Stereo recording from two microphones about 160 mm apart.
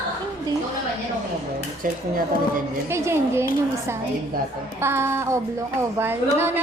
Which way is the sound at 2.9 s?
15° right (ahead or behind).